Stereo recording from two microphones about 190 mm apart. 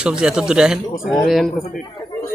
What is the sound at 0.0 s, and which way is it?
Speech, 5° right (ahead or behind).